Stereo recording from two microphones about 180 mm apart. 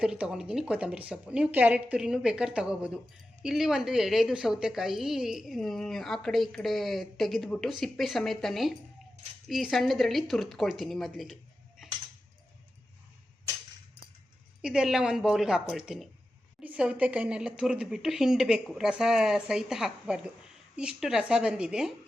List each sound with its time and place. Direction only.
0.0 s a woman's voice: 5° right (ahead or behind)
14.6 s a woman's voice: 5° right (ahead or behind)